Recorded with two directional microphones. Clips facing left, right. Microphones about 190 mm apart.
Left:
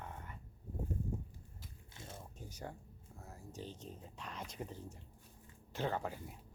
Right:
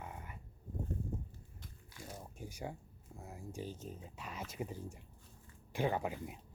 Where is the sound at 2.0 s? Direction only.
25° left (ahead or behind).